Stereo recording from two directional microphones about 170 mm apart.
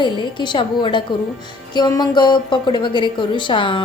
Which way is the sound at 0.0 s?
25° left (ahead or behind).